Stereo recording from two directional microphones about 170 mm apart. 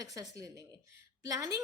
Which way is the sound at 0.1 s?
20° right (ahead or behind).